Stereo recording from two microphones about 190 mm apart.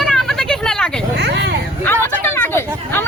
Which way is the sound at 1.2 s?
65° right (ahead or behind).